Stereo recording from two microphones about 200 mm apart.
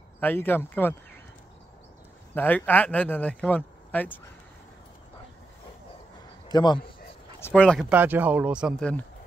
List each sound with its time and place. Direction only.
0.2 s speech: 10° left (ahead or behind)
2.3 s speech: 10° left (ahead or behind)
6.5 s a man's voice: 20° left (ahead or behind)
7.3 s speech: 10° left (ahead or behind)
7.9 s speech: 10° right (ahead or behind)